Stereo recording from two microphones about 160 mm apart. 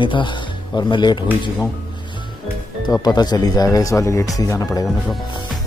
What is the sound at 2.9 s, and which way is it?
Speech, 25° left (ahead or behind).